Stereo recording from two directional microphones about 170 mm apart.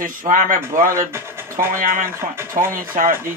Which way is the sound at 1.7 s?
55° right (ahead or behind).